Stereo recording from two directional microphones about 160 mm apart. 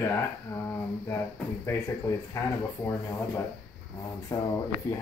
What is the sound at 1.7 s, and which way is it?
Speech, 20° left (ahead or behind).